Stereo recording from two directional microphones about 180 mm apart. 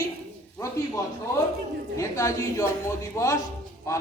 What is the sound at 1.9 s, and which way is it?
A woman's voice, 15° left (ahead or behind).